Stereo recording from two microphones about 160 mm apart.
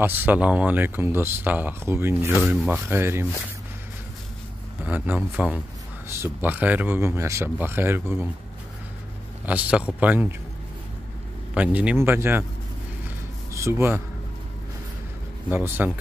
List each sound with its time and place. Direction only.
0.0 s speech: 10° right (ahead or behind)
2.3 s speech: centre (ahead or behind)
2.9 s speech: 15° right (ahead or behind)
4.8 s speech: 10° right (ahead or behind)
9.5 s speech: 10° right (ahead or behind)
11.5 s speech: 10° right (ahead or behind)
13.5 s speech: 15° right (ahead or behind)
15.5 s speech: 10° right (ahead or behind)